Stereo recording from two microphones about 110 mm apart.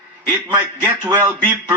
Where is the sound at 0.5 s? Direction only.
20° right (ahead or behind).